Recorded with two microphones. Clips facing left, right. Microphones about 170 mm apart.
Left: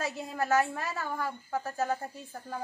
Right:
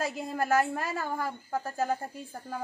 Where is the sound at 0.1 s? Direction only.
15° right (ahead or behind).